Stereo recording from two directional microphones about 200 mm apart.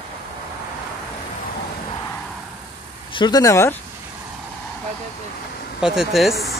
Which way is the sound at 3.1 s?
20° left (ahead or behind).